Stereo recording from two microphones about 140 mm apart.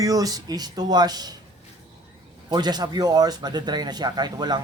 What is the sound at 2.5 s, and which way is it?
Speech, 30° right (ahead or behind).